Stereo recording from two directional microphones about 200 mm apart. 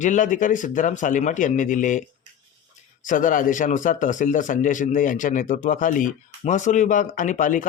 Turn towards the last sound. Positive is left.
turn(degrees=40)  # may be behind; listen again after turning